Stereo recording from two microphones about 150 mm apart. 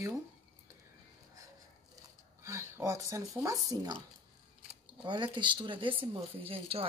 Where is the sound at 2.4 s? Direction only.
20° right (ahead or behind).